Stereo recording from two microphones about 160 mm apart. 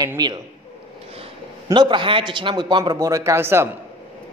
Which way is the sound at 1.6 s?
30° right (ahead or behind).